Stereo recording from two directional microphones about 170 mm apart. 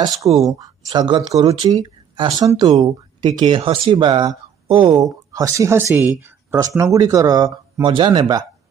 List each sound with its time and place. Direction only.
0.5 s speech: 20° right (ahead or behind)
6.2 s a sound: 15° right (ahead or behind)
6.8 s speech: 20° right (ahead or behind)